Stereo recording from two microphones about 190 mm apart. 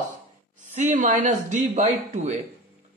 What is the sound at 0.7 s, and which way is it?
Speech, 40° right (ahead or behind).